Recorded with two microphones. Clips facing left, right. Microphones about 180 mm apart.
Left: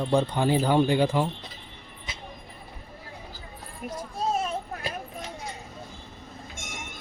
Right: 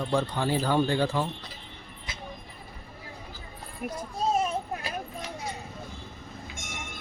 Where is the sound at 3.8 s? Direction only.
60° right (ahead or behind).